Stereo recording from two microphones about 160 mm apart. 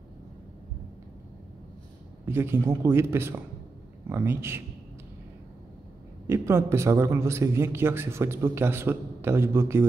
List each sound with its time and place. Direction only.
2.2 s a man's voice: 15° right (ahead or behind)
6.2 s a man's voice: 15° right (ahead or behind)